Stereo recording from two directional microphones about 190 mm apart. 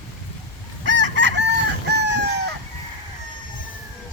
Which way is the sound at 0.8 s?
75° right (ahead or behind).